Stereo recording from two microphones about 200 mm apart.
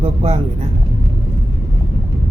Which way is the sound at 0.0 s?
30° right (ahead or behind).